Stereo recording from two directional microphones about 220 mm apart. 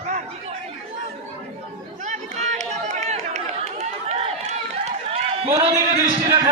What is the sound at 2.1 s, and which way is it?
Chatter, 30° right (ahead or behind).